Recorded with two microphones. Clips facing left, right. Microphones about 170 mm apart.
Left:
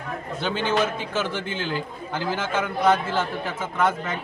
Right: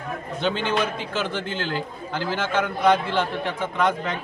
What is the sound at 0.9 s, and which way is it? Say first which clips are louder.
A man's voice: even; 10° left (ahead or behind).